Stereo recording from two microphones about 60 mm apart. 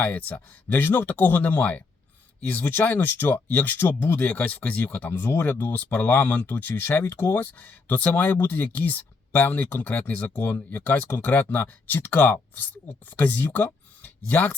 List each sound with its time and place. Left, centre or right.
0.0 s speech: left